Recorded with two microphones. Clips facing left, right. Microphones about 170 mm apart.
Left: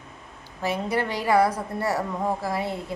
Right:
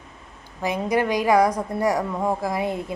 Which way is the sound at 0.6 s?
15° right (ahead or behind).